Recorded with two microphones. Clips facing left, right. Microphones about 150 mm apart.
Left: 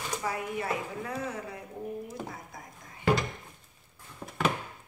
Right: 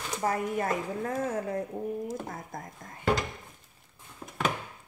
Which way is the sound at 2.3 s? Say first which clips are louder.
Right 4 dB; 50° right (ahead or behind).